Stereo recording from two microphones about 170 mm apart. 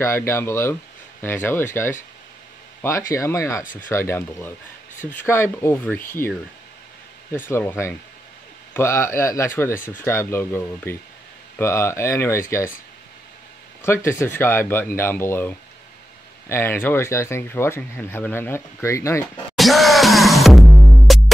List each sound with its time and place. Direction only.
0.0 s speech: 15° left (ahead or behind)
7.3 s speech: 10° left (ahead or behind)
13.8 s speech: 15° left (ahead or behind)
19.5 s music: centre (ahead or behind)